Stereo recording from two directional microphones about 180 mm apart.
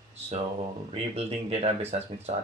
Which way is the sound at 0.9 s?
35° right (ahead or behind).